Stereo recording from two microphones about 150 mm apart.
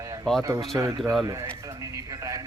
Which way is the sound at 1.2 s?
20° right (ahead or behind).